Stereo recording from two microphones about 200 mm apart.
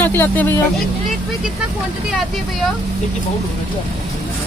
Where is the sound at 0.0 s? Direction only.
10° left (ahead or behind).